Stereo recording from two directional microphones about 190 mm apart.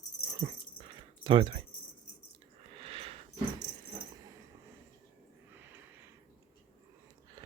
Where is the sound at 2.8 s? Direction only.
30° right (ahead or behind).